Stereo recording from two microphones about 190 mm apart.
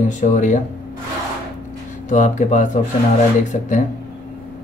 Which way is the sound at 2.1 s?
40° left (ahead or behind).